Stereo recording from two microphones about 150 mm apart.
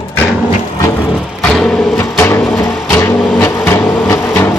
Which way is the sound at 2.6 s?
5° left (ahead or behind).